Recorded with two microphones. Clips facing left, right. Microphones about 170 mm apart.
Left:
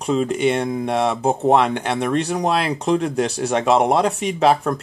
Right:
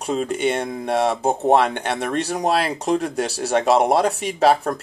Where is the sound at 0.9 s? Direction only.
40° right (ahead or behind).